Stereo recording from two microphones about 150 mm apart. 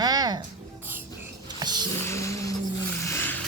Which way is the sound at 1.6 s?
30° right (ahead or behind).